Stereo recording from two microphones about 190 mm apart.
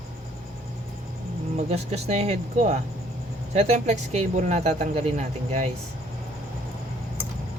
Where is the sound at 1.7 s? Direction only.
35° right (ahead or behind).